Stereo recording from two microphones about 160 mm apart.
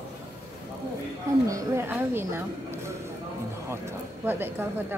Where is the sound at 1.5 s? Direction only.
20° right (ahead or behind).